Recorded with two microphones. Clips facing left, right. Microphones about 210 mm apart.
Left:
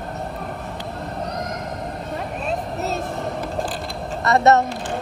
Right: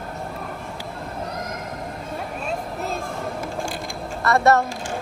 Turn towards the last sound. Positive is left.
turn(degrees=20)  # may be behind; listen again after turning